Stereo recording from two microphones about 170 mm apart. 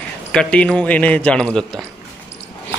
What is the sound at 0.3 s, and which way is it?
A man's voice, 5° left (ahead or behind).